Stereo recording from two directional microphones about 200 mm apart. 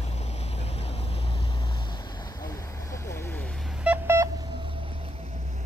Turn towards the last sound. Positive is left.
turn(degrees=-10)  # may be behind; listen again after turning